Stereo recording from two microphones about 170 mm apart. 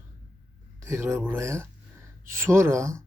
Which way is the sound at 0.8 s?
15° right (ahead or behind).